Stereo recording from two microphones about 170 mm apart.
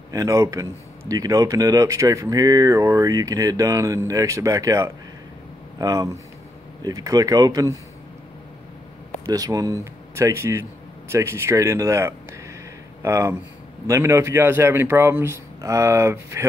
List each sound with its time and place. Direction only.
0.1 s speech: 20° right (ahead or behind)
9.2 s a man's voice: 20° right (ahead or behind)